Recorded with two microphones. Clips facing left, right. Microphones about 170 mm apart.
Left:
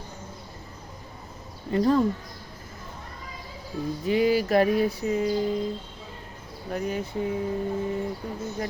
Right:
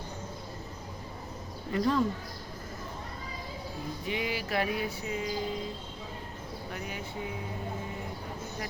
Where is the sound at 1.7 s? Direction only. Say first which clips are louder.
Left 6 dB; 40° left (ahead or behind).